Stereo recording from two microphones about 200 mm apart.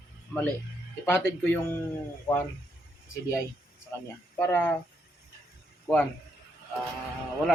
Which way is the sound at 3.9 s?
15° left (ahead or behind).